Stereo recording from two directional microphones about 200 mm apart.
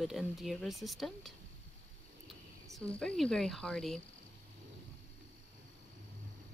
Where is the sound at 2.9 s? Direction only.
5° left (ahead or behind).